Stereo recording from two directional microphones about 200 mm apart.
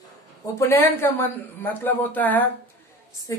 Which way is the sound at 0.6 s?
10° left (ahead or behind).